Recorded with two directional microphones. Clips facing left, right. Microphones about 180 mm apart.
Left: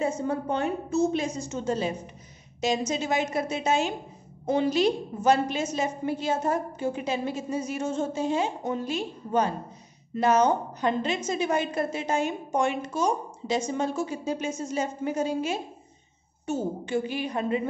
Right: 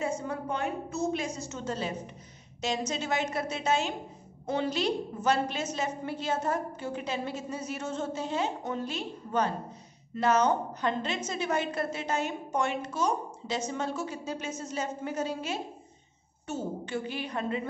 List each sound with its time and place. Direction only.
0.0 s a woman's voice: 25° left (ahead or behind)